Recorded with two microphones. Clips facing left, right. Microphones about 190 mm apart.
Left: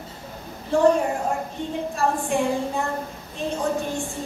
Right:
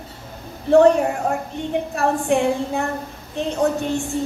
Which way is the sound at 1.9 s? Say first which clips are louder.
Right 4 dB; 70° right (ahead or behind).